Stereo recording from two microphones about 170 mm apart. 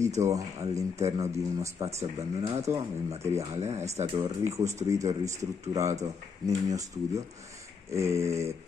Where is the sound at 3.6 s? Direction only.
40° right (ahead or behind).